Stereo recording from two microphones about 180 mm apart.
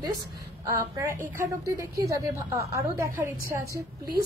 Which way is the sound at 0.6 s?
15° right (ahead or behind).